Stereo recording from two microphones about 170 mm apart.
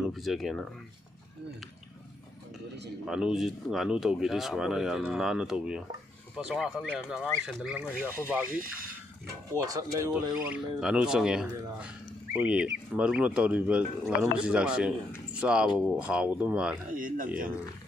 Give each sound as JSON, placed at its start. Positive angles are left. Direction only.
{"t": 0.0, "sound": "speech", "side_deg": 0}
{"t": 3.1, "sound": "speech", "side_deg": -5}
{"t": 8.5, "sound": "speech", "side_deg": -55}
{"t": 9.5, "sound": "speech", "side_deg": -20}
{"t": 10.8, "sound": "speech", "side_deg": -5}
{"t": 16.9, "sound": "speech", "side_deg": -55}